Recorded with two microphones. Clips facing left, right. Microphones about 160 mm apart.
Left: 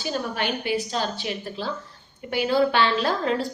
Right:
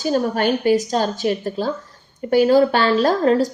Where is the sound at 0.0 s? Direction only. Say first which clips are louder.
Right 9 dB; 45° right (ahead or behind).